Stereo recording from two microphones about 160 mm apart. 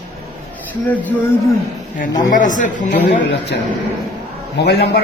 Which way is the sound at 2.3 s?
55° left (ahead or behind).